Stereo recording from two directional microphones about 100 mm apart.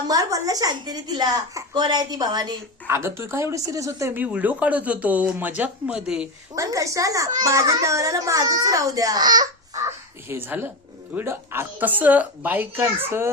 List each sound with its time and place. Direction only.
0.1 s a child's voice: 35° right (ahead or behind)
2.8 s speech: 25° right (ahead or behind)
4.2 s speech: 15° right (ahead or behind)
6.6 s a child's voice: 35° right (ahead or behind)
9.8 s speech: 20° right (ahead or behind)